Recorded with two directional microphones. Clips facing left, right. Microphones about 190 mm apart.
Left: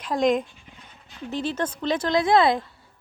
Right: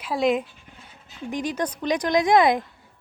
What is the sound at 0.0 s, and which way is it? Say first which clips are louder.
Speech: left 1 dB; 5° right (ahead or behind).